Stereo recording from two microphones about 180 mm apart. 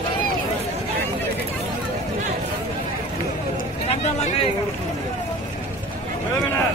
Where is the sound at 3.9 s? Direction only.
40° left (ahead or behind).